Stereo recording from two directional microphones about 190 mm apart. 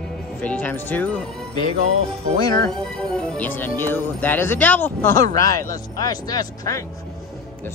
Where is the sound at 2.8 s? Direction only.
5° left (ahead or behind).